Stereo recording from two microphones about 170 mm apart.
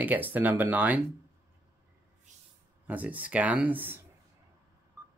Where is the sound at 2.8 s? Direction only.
10° right (ahead or behind).